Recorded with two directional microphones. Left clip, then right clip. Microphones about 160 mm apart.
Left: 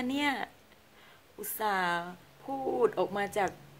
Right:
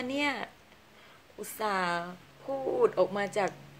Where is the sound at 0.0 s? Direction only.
20° left (ahead or behind).